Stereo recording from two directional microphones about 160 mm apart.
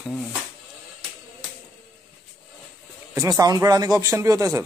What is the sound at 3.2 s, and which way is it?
A man's voice, 25° right (ahead or behind).